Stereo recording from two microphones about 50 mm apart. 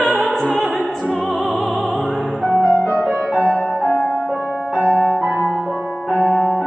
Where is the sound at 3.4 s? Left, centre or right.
Left.